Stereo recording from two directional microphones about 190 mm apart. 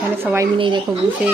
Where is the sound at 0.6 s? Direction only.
25° right (ahead or behind).